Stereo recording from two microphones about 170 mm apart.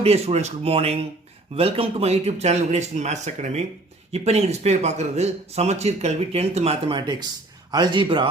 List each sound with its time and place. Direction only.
0.0 s a man's voice: 35° right (ahead or behind)